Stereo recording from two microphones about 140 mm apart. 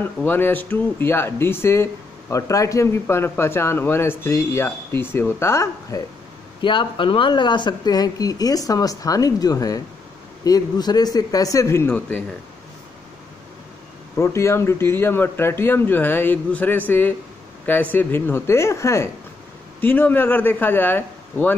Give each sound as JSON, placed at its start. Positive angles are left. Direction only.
{"t": 0.0, "sound": "speech", "side_deg": 15}
{"t": 6.6, "sound": "speech", "side_deg": 35}
{"t": 14.1, "sound": "speech", "side_deg": 20}